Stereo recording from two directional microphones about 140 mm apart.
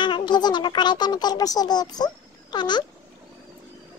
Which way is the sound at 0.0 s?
35° left (ahead or behind).